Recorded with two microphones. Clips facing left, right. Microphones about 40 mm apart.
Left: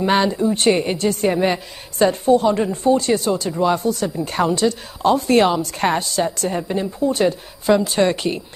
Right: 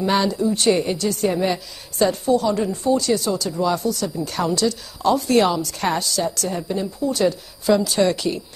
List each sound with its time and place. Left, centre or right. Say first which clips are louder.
0.0 s a woman's voice: left 2 dB; left